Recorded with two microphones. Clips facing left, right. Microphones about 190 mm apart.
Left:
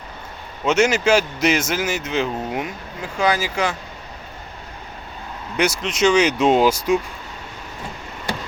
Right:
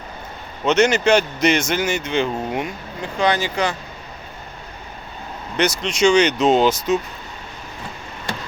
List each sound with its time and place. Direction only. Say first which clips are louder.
0.6 s speech: right 1 dB; 5° left (ahead or behind)
5.5 s speech: right 1 dB; 5° left (ahead or behind)